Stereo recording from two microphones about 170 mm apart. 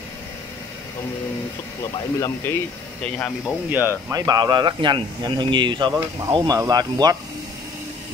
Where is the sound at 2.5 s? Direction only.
15° left (ahead or behind).